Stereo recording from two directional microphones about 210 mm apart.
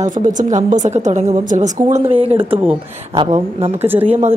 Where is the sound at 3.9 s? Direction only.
10° right (ahead or behind).